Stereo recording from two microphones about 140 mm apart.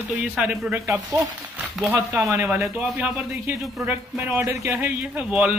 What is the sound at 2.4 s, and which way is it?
A man's voice, 10° right (ahead or behind).